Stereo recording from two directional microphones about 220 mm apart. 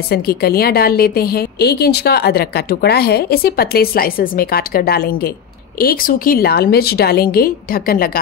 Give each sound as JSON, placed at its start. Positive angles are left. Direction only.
{"t": 0.1, "sound": "a woman's voice", "side_deg": 45}